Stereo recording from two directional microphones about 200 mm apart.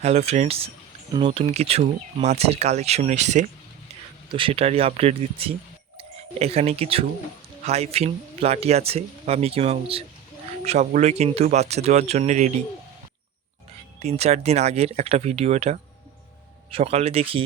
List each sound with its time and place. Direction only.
0.0 s speech: 30° right (ahead or behind)
14.0 s speech: 30° right (ahead or behind)